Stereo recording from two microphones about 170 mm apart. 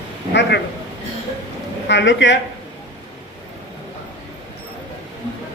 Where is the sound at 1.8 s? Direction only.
90° left.